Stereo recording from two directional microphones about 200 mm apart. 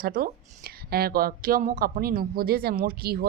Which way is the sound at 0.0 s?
45° right (ahead or behind).